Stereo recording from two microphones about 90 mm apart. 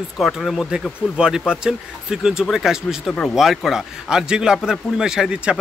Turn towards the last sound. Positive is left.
turn(degrees=-10)  # may be behind; listen again after turning